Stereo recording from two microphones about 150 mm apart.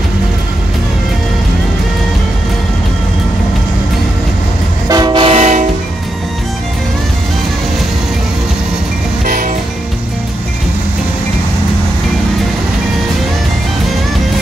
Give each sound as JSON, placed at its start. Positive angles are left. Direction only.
{"t": 4.8, "sound": "train", "side_deg": -25}
{"t": 9.2, "sound": "music", "side_deg": -65}